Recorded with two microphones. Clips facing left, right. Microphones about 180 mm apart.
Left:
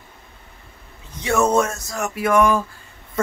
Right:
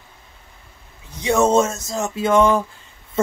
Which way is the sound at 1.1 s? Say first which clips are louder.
Right 2 dB; 15° right (ahead or behind).